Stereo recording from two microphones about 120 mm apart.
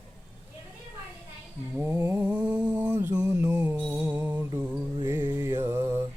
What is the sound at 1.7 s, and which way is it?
Mantra, 20° right (ahead or behind).